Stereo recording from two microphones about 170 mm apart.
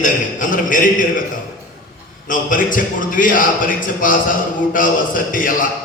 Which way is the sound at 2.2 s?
50° left (ahead or behind).